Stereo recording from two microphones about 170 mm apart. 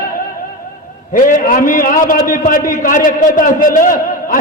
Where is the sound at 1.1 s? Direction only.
55° left (ahead or behind).